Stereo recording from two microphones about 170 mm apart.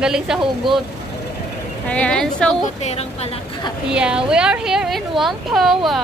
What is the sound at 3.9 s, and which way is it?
A woman's voice, 5° right (ahead or behind).